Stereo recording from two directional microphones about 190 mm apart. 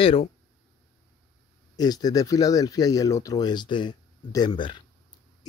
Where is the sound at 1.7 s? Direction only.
20° left (ahead or behind).